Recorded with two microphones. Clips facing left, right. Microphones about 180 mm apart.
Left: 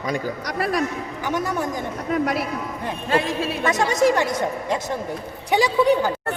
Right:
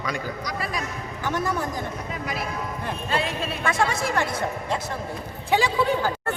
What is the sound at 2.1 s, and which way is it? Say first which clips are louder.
Speech: left 14 dB; 70° left (ahead or behind).